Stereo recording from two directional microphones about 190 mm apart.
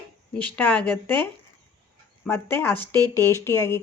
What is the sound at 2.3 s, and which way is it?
Speech, 10° left (ahead or behind).